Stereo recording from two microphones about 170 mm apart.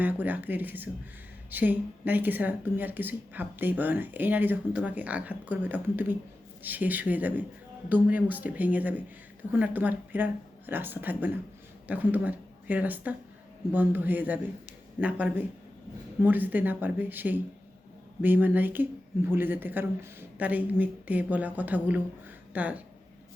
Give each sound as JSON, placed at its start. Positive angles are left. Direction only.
{"t": 0.0, "sound": "a woman's voice", "side_deg": -10}